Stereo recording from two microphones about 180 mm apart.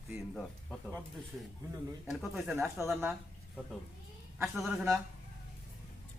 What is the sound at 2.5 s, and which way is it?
Speech, 10° right (ahead or behind).